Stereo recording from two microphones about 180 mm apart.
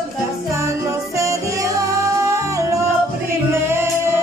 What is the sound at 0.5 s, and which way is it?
Music, 15° right (ahead or behind).